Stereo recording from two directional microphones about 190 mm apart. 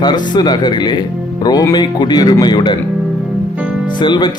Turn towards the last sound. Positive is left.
turn(degrees=25)  # may be behind; listen again after turning